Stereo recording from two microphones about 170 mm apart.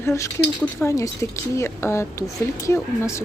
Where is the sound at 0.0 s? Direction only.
15° left (ahead or behind).